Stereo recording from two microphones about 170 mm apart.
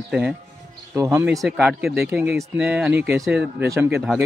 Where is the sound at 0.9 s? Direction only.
15° right (ahead or behind).